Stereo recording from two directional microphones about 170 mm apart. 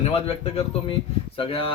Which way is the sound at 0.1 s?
35° left (ahead or behind).